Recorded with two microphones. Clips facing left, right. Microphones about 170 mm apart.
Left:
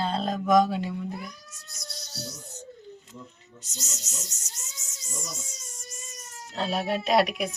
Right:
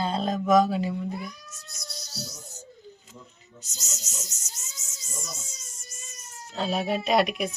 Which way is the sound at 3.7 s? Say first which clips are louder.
Left 2 dB; centre (ahead or behind).